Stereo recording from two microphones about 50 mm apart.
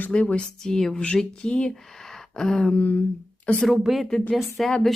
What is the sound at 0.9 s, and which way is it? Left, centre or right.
Speech, left.